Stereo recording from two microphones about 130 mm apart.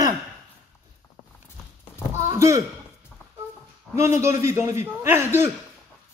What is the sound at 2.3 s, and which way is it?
Speech, 25° right (ahead or behind).